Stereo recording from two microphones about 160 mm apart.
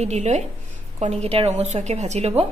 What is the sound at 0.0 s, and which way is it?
A woman's voice, 45° right (ahead or behind).